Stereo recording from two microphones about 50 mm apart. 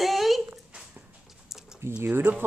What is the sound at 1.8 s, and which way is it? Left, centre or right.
Speech, right.